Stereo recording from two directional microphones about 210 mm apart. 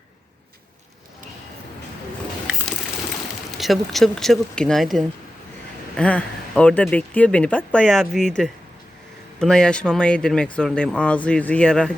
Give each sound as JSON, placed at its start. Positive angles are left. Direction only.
{"t": 3.6, "sound": "speech", "side_deg": 0}